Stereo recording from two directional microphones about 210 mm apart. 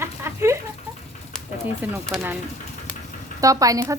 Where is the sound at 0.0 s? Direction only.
10° right (ahead or behind).